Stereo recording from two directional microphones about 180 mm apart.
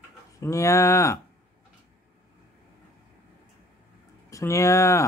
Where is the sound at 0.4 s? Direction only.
15° left (ahead or behind).